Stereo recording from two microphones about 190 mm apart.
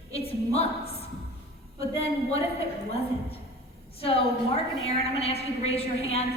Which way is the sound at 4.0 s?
30° left (ahead or behind).